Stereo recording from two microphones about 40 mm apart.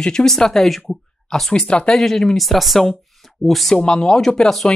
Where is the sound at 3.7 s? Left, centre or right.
Centre.